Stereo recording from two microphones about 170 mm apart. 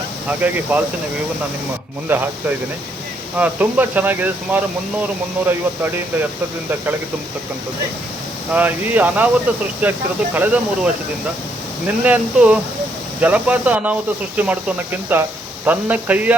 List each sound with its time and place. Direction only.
0.3 s speech: 10° right (ahead or behind)
2.0 s speech: 10° right (ahead or behind)
8.5 s speech: 10° right (ahead or behind)
12.0 s speech: 10° right (ahead or behind)